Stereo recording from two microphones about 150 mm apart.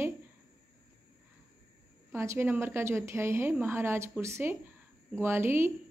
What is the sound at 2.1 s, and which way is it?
A woman's voice, 15° right (ahead or behind).